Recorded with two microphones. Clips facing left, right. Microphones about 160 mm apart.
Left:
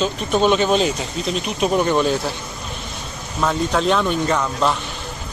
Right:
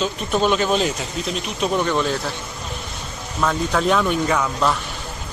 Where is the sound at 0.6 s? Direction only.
Centre (ahead or behind).